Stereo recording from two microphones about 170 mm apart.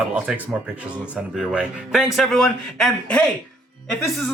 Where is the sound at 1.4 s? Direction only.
5° right (ahead or behind).